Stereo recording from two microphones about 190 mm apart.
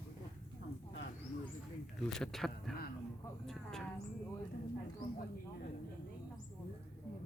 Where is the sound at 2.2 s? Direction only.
Centre (ahead or behind).